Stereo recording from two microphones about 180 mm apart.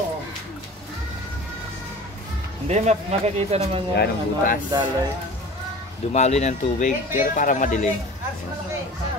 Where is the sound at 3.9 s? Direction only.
55° left (ahead or behind).